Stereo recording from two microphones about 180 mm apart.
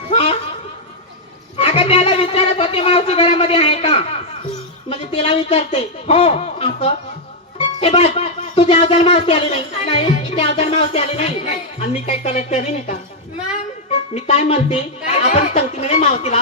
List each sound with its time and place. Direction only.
0.1 s a sound: 35° left (ahead or behind)
1.5 s speech: 30° left (ahead or behind)
14.1 s speech: 35° left (ahead or behind)